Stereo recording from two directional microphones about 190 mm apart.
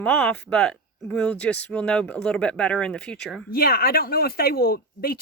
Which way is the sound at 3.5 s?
50° left (ahead or behind).